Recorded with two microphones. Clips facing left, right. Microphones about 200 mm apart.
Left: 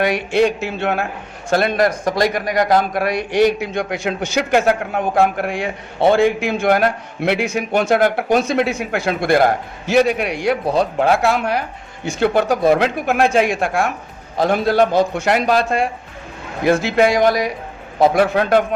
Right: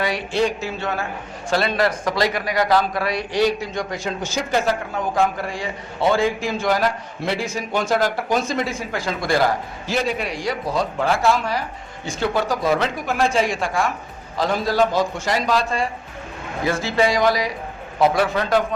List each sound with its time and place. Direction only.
0.0 s a man's voice: 60° left (ahead or behind)
1.5 s a man's voice: 50° left (ahead or behind)